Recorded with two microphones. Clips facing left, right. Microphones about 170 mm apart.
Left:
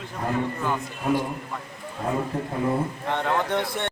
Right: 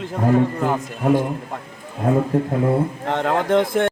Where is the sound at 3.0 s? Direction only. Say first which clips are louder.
Right 5 dB; 50° right (ahead or behind).